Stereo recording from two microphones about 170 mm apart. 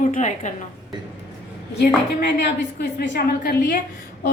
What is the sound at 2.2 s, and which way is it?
A woman's voice, 90° left.